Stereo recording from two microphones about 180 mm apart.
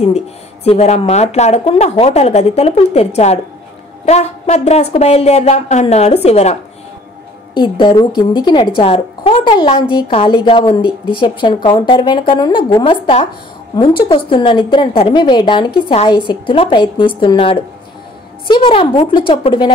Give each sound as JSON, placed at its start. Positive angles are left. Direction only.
{"t": 0.7, "sound": "a woman's voice", "side_deg": 35}
{"t": 7.8, "sound": "a woman's voice", "side_deg": 25}